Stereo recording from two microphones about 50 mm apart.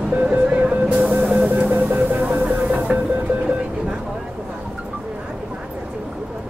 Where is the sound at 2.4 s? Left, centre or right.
Centre.